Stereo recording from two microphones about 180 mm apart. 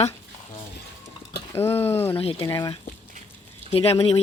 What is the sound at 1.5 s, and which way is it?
Speech, 15° left (ahead or behind).